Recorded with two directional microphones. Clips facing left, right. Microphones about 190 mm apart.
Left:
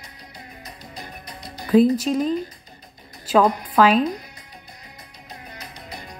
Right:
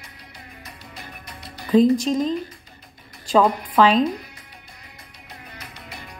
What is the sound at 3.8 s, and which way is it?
Speech, 10° left (ahead or behind).